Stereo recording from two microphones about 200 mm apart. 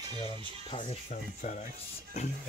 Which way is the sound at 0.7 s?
30° left (ahead or behind).